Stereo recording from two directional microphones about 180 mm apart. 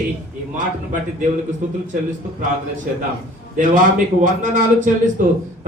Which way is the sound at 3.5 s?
45° right (ahead or behind).